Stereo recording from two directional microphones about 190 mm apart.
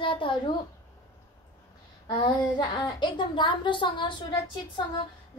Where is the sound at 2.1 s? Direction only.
20° left (ahead or behind).